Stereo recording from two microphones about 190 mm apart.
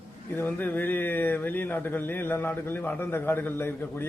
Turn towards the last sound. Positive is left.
turn(degrees=10)  # may be behind; listen again after turning